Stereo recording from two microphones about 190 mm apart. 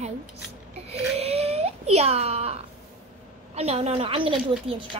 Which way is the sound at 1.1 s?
35° right (ahead or behind).